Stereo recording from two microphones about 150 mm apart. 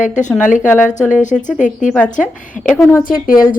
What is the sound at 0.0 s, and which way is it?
Speech, 55° left (ahead or behind).